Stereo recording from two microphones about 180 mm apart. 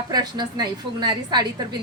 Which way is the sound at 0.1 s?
25° right (ahead or behind).